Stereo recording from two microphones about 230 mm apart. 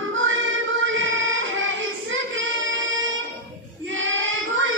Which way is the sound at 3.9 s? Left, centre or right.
Right.